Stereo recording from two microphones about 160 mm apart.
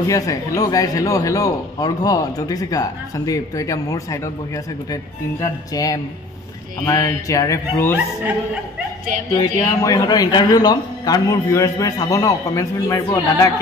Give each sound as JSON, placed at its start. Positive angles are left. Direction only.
{"t": 0.0, "sound": "speech", "side_deg": 20}
{"t": 5.4, "sound": "speech", "side_deg": 20}
{"t": 9.8, "sound": "speech", "side_deg": 25}